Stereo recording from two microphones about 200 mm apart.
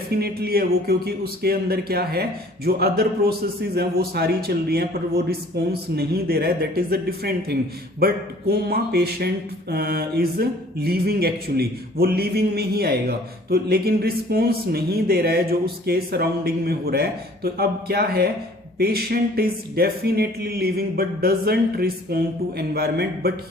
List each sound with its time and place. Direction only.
0.1 s a man's voice: 50° right (ahead or behind)